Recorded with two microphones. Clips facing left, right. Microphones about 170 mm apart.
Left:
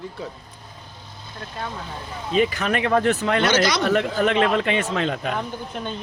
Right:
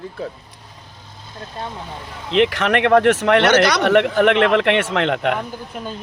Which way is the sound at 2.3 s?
75° right (ahead or behind).